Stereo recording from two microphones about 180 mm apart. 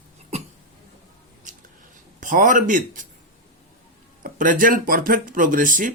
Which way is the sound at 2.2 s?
45° right (ahead or behind).